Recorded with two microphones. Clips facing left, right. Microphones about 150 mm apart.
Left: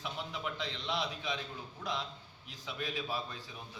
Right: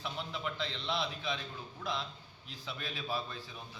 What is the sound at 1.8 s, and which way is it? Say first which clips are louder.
A man's voice: even; 15° left (ahead or behind).